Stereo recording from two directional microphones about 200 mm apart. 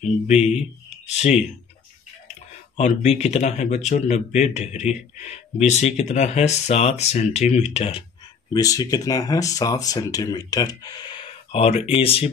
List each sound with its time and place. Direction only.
0.3 s speech: 35° left (ahead or behind)
2.8 s speech: 35° left (ahead or behind)
8.5 s speech: 20° left (ahead or behind)